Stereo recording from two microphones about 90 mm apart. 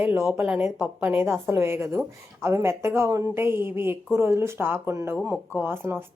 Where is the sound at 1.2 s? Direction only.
25° right (ahead or behind).